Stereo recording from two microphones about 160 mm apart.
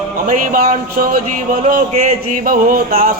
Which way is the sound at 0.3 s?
60° right (ahead or behind).